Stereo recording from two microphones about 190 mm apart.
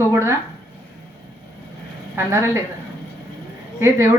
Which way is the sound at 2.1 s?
15° right (ahead or behind).